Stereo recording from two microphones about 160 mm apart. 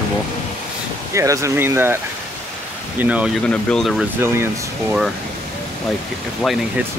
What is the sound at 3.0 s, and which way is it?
Speech, 10° right (ahead or behind).